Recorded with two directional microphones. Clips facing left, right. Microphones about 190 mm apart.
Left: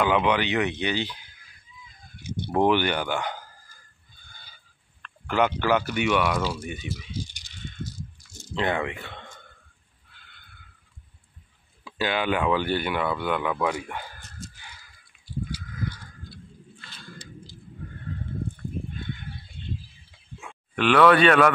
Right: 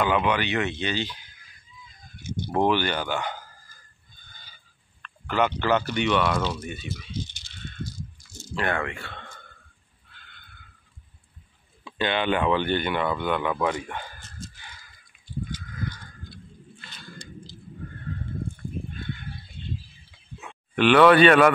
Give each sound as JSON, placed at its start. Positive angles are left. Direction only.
{"t": 0.0, "sound": "speech", "side_deg": 15}
{"t": 2.5, "sound": "speech", "side_deg": 15}
{"t": 5.2, "sound": "speech", "side_deg": 10}
{"t": 8.4, "sound": "speech", "side_deg": 20}
{"t": 11.8, "sound": "speech", "side_deg": 5}
{"t": 15.5, "sound": "a sound", "side_deg": 5}
{"t": 20.7, "sound": "speech", "side_deg": 0}